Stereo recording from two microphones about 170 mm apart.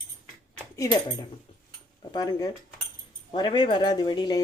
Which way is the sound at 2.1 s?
25° left (ahead or behind).